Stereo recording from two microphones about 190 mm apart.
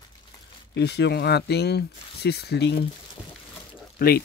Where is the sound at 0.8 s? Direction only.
60° left (ahead or behind).